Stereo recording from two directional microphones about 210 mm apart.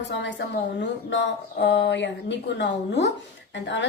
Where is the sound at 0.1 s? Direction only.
55° left (ahead or behind).